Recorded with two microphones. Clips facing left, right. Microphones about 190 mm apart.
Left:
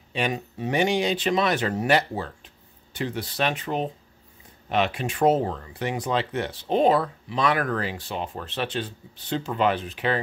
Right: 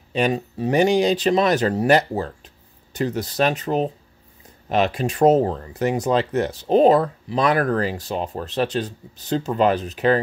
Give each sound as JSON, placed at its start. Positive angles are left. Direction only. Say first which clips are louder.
{"t": 0.1, "sound": "speech", "louder": "right 6 dB", "side_deg": -35}